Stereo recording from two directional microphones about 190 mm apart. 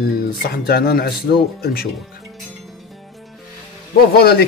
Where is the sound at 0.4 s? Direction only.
55° left (ahead or behind).